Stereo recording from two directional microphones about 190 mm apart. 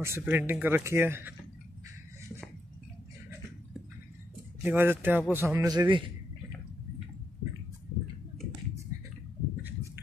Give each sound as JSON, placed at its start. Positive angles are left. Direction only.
{"t": 0.0, "sound": "speech", "side_deg": -10}
{"t": 4.6, "sound": "a man's voice", "side_deg": -10}